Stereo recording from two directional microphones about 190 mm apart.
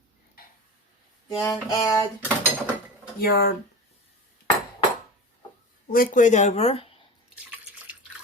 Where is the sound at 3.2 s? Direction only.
55° left (ahead or behind).